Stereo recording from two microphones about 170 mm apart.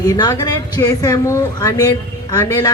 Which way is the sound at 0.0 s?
25° left (ahead or behind).